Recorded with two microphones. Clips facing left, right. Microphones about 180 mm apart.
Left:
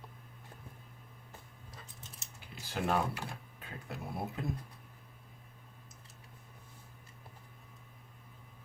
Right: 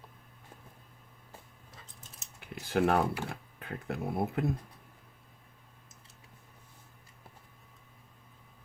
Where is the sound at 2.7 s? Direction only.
60° right (ahead or behind).